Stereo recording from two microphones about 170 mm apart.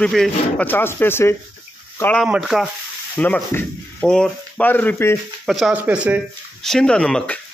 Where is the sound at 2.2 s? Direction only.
Centre (ahead or behind).